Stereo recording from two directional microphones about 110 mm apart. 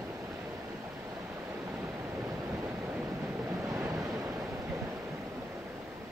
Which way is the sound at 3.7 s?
25° right (ahead or behind).